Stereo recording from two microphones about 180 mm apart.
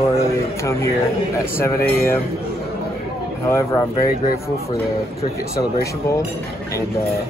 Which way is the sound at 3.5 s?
15° left (ahead or behind).